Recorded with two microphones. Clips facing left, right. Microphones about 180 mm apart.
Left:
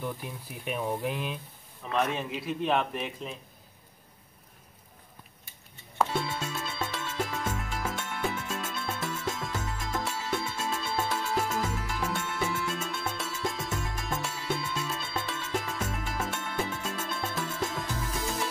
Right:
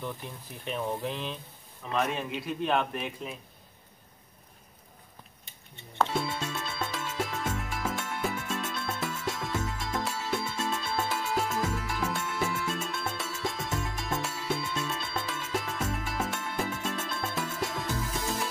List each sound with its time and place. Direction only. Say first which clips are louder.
0.0 s speech: left 2 dB; 10° left (ahead or behind)
1.9 s a man's voice: left 1 dB; centre (ahead or behind)
5.9 s music: even; centre (ahead or behind)